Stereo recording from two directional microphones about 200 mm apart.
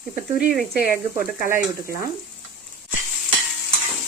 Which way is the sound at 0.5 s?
10° right (ahead or behind).